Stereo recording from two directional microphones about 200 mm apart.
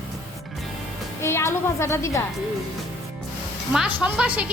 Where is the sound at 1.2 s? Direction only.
15° left (ahead or behind).